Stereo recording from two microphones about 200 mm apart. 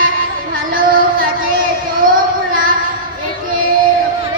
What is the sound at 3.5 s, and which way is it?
Child singing, 45° right (ahead or behind).